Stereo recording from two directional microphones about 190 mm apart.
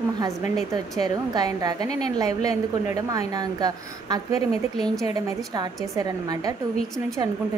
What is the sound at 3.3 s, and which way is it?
Speech, 20° right (ahead or behind).